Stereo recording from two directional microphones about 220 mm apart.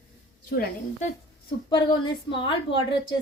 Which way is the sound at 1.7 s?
20° left (ahead or behind).